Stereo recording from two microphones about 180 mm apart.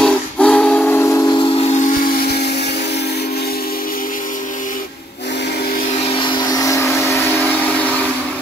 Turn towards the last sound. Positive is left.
turn(degrees=10)  # may be behind; listen again after turning